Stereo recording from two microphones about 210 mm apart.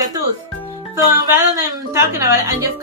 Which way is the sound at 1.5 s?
15° right (ahead or behind).